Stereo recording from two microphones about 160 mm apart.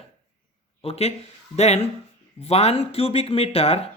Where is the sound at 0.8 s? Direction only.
40° left (ahead or behind).